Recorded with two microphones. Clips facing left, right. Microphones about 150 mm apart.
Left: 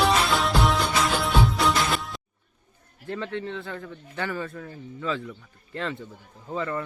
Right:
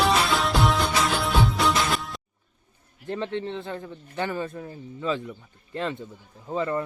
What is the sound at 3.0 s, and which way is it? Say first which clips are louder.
Speech: right 2 dB; 20° right (ahead or behind).